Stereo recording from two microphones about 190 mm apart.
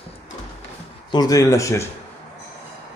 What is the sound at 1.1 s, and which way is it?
Speech, 20° left (ahead or behind).